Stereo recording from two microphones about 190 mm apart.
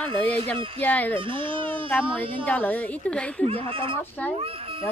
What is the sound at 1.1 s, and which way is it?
Speech, 25° right (ahead or behind).